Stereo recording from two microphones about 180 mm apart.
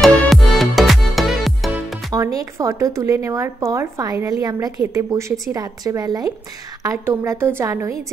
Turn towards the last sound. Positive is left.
turn(degrees=-15)  # may be behind; listen again after turning